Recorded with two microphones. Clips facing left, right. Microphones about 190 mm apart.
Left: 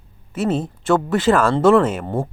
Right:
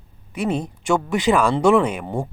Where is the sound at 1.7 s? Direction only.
10° right (ahead or behind).